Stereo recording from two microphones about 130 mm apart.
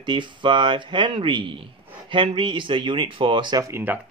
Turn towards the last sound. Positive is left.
turn(degrees=-15)  # may be behind; listen again after turning